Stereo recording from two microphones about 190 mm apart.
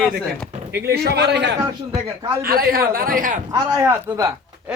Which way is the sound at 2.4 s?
50° right (ahead or behind).